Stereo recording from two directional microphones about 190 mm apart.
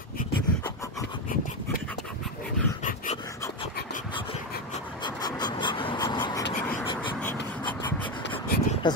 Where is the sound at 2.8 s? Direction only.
40° left (ahead or behind).